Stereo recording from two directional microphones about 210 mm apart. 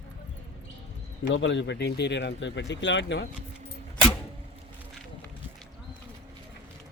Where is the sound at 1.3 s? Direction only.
60° left (ahead or behind).